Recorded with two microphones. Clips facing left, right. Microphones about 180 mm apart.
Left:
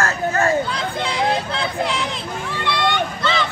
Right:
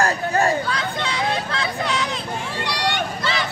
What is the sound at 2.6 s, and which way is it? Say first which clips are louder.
Vehicle: left 4 dB; 40° right (ahead or behind).